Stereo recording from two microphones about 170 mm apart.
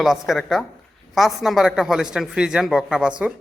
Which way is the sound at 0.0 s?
Centre (ahead or behind).